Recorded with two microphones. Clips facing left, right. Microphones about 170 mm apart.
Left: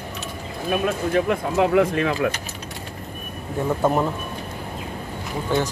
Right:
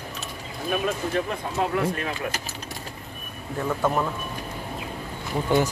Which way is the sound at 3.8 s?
20° left (ahead or behind).